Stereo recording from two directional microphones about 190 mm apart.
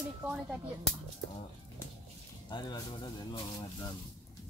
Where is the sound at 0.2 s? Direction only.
5° right (ahead or behind).